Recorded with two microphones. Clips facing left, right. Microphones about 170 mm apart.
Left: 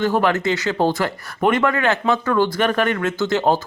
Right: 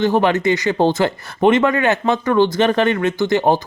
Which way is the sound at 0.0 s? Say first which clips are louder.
Right 3 dB; 20° right (ahead or behind).